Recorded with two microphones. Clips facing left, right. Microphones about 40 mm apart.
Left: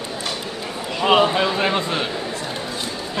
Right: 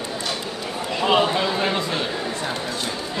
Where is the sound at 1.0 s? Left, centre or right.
Centre.